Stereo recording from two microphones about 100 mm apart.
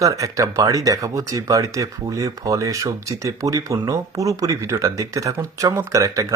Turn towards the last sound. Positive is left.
turn(degrees=-35)  # may be behind; listen again after turning